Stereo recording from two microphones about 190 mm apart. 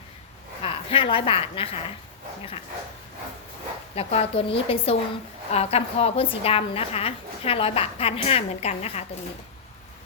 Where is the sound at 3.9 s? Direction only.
30° left (ahead or behind).